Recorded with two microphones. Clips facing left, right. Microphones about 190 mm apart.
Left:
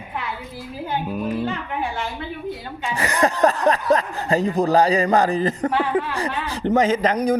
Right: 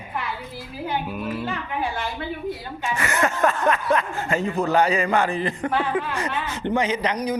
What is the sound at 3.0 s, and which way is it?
Speech, 35° left (ahead or behind).